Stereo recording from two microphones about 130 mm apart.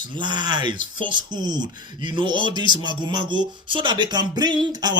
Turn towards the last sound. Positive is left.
turn(degrees=-35)  # may be behind; listen again after turning